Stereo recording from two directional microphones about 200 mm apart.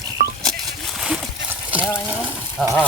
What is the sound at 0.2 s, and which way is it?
Patter, 40° right (ahead or behind).